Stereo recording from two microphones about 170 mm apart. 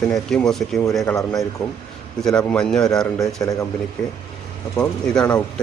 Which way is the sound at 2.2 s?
5° left (ahead or behind).